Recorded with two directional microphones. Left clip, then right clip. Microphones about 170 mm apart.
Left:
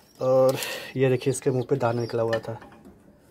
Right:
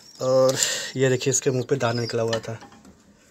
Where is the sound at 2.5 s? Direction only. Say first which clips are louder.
Even; 15° right (ahead or behind).